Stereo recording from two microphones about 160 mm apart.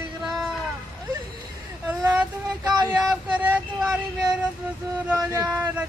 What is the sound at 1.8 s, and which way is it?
Vehicle, 10° right (ahead or behind).